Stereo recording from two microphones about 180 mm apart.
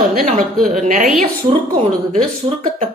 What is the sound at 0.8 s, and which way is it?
Speech, 40° right (ahead or behind).